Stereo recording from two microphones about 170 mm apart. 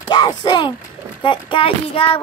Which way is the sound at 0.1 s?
25° left (ahead or behind).